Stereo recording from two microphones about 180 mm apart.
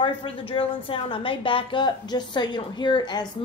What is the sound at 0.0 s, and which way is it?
A woman's voice, 30° left (ahead or behind).